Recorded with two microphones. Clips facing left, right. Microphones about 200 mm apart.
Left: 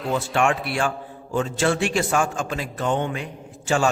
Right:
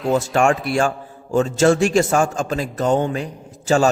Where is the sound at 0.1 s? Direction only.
45° right (ahead or behind).